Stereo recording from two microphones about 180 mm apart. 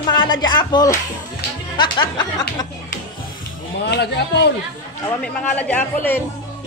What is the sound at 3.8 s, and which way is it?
Speech, 70° left (ahead or behind).